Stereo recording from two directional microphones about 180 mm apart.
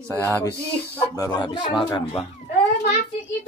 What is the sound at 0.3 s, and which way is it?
Speech, 15° right (ahead or behind).